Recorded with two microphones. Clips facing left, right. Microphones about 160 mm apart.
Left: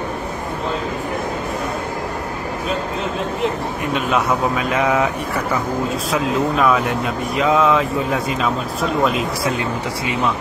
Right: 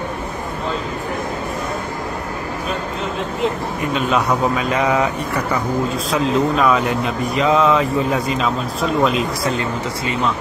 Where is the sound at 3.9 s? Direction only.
Centre (ahead or behind).